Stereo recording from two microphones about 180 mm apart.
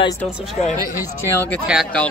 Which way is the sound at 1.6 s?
Centre (ahead or behind).